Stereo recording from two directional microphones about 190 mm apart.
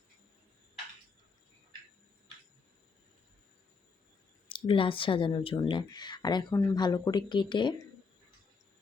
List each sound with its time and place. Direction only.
4.4 s speech: 25° left (ahead or behind)